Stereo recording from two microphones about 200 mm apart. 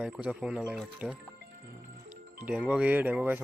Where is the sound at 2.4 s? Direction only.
5° right (ahead or behind).